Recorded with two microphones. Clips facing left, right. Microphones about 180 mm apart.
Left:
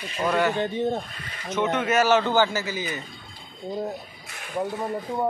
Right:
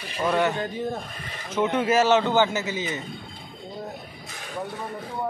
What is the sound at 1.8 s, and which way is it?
A man's voice, 25° right (ahead or behind).